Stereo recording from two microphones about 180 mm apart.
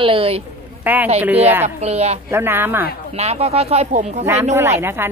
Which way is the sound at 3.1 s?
35° right (ahead or behind).